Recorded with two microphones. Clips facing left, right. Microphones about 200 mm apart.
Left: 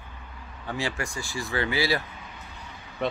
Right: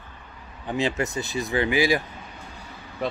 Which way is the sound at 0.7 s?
20° right (ahead or behind).